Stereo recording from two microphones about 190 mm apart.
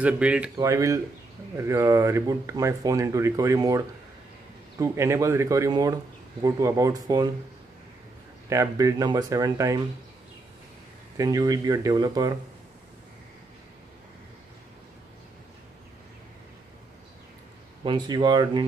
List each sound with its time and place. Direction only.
0.0 s speech: 5° right (ahead or behind)
0.6 s speech: 15° right (ahead or behind)
8.5 s speech: 15° right (ahead or behind)
11.1 s speech: 20° right (ahead or behind)
17.8 s speech: 25° right (ahead or behind)